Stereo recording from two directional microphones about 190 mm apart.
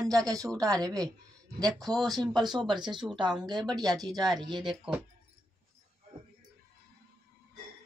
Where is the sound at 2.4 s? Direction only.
20° right (ahead or behind).